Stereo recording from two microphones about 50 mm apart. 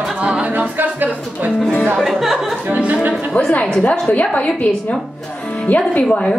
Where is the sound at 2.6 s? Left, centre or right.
Right.